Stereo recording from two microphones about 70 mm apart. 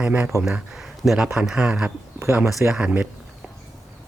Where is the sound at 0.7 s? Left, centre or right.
Centre.